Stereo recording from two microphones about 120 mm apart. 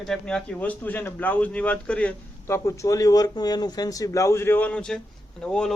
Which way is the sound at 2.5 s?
25° left (ahead or behind).